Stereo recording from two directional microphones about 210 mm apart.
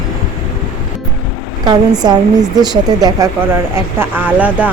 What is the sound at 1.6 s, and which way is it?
A woman's voice, 20° right (ahead or behind).